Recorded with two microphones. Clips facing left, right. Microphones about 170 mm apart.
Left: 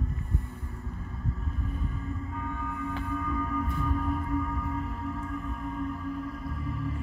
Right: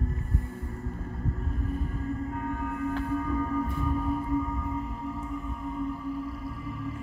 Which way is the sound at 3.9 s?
20° right (ahead or behind).